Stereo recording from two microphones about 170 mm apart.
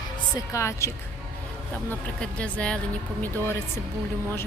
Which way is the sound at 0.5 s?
15° left (ahead or behind).